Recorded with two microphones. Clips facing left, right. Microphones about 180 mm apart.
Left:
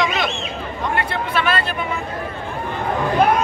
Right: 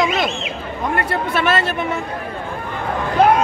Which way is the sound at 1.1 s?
45° right (ahead or behind).